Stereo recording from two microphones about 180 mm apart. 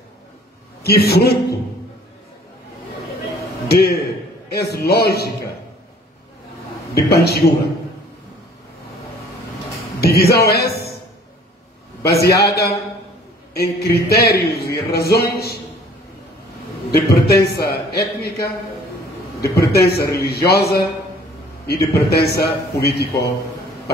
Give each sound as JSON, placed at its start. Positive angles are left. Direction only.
{"t": 0.8, "sound": "speech", "side_deg": 60}
{"t": 3.6, "sound": "a man's voice", "side_deg": 60}
{"t": 7.1, "sound": "speech", "side_deg": 60}
{"t": 9.9, "sound": "speech", "side_deg": 60}
{"t": 12.0, "sound": "speech", "side_deg": 60}
{"t": 16.9, "sound": "speech", "side_deg": 60}
{"t": 19.4, "sound": "speech", "side_deg": 60}